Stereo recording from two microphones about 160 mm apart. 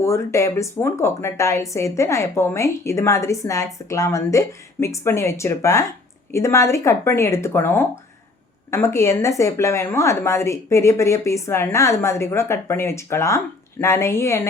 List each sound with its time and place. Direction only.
0.0 s speech: 15° left (ahead or behind)